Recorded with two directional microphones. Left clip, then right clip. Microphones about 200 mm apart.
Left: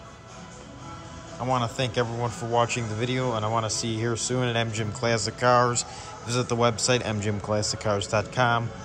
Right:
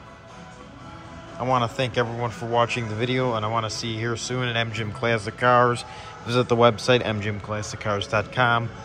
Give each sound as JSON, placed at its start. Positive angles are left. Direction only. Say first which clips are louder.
{"t": 1.4, "sound": "speech", "louder": "right 4 dB", "side_deg": 10}
{"t": 7.2, "sound": "speech", "louder": "left 3 dB", "side_deg": 20}